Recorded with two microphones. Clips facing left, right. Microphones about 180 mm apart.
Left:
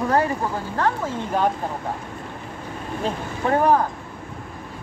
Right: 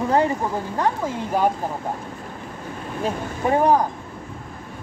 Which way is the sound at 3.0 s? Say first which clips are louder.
Right 2 dB; 15° right (ahead or behind).